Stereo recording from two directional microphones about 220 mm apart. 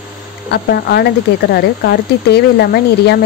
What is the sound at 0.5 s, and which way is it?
Speech, 45° left (ahead or behind).